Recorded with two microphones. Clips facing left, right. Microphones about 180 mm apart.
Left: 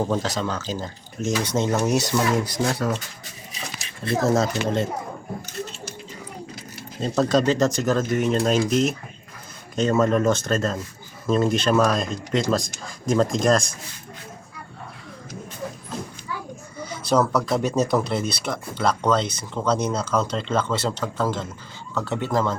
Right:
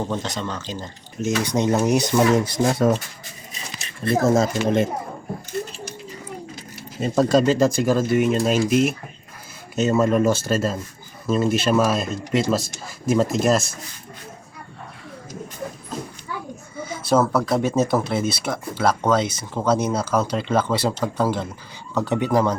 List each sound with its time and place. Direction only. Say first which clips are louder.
0.1 s speech: left 2 dB; centre (ahead or behind)
1.5 s speech: right 3 dB; 15° right (ahead or behind)
4.1 s speech: right 2 dB; 15° right (ahead or behind)
7.2 s speech: right 3 dB; 10° right (ahead or behind)
16.8 s speech: right 2 dB; 5° right (ahead or behind)